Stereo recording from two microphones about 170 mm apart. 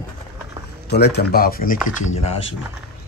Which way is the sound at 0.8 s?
75° left (ahead or behind).